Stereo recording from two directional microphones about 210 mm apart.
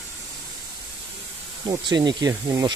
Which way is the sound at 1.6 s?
20° right (ahead or behind).